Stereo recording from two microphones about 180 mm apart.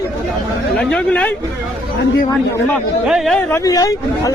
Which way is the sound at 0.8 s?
5° left (ahead or behind).